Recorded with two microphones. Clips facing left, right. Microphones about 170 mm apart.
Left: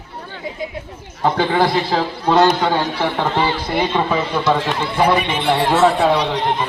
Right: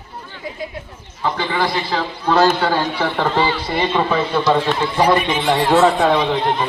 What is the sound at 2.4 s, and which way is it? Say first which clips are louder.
Speech: left 1 dB; 15° left (ahead or behind).